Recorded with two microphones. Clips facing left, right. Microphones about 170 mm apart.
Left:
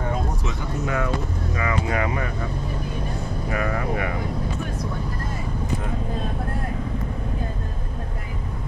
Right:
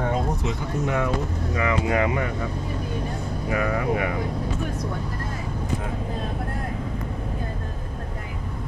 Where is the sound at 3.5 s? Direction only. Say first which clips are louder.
Right 2 dB; 25° right (ahead or behind).